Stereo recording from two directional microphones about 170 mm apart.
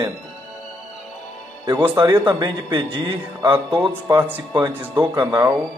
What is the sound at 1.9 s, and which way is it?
A man's voice, 25° right (ahead or behind).